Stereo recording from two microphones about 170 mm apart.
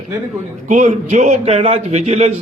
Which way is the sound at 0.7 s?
45° right (ahead or behind).